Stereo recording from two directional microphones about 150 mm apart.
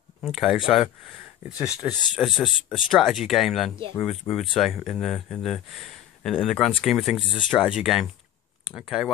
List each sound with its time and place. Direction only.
0.2 s speech: centre (ahead or behind)
7.2 s speech: 35° left (ahead or behind)
7.5 s speech: 5° right (ahead or behind)